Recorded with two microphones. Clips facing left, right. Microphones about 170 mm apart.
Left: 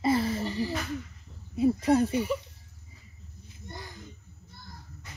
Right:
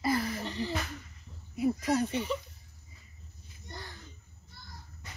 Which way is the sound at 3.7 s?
15° left (ahead or behind).